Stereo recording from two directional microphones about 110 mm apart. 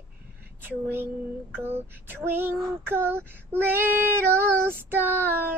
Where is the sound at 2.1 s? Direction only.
20° right (ahead or behind).